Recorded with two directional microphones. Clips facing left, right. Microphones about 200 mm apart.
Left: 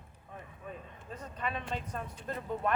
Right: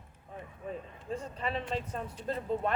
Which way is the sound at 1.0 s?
30° right (ahead or behind).